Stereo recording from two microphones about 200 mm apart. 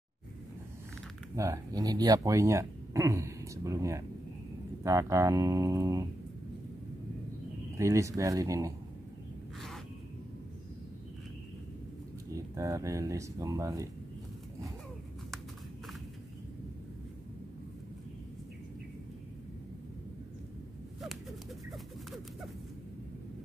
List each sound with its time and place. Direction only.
1.3 s speech: 15° right (ahead or behind)
7.7 s speech: 15° right (ahead or behind)
12.5 s speech: 15° right (ahead or behind)
21.0 s a sound: centre (ahead or behind)